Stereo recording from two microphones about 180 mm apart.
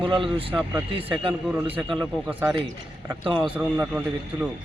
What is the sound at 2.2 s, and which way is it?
Speech, 15° right (ahead or behind).